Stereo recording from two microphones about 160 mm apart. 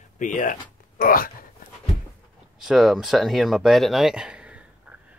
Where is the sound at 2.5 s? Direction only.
Centre (ahead or behind).